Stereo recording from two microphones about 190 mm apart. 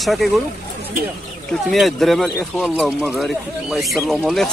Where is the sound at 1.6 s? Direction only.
Centre (ahead or behind).